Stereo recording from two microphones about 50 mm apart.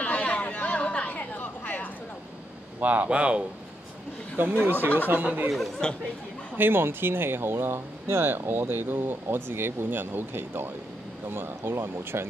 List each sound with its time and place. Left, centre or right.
0.0 s chatter: left
2.8 s speech: right
3.1 s speech: right
4.4 s speech: right
5.8 s speech: centre
6.5 s speech: right